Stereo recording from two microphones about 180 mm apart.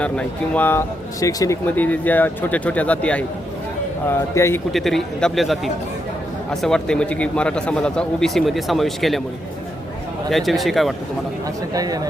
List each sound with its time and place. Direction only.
0.0 s a man's voice: 5° left (ahead or behind)
4.4 s a man's voice: 15° left (ahead or behind)
4.7 s a man's voice: centre (ahead or behind)
10.2 s a man's voice: centre (ahead or behind)
11.4 s speech: 20° right (ahead or behind)